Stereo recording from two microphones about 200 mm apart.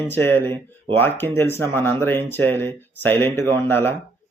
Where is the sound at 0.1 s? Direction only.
10° left (ahead or behind).